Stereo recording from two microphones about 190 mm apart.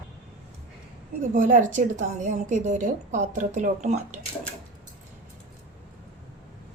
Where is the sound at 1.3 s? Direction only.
40° right (ahead or behind).